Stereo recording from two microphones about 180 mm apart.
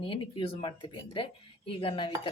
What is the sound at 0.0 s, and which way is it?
Speech, 30° left (ahead or behind).